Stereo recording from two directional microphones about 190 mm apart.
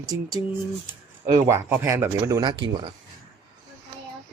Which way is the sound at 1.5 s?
10° right (ahead or behind).